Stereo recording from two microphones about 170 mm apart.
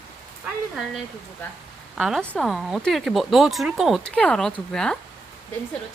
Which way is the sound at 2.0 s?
Centre (ahead or behind).